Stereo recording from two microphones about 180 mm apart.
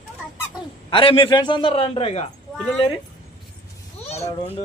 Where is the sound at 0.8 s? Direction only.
30° left (ahead or behind).